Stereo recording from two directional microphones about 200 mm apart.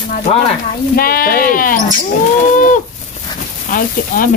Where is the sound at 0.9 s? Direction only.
50° left (ahead or behind).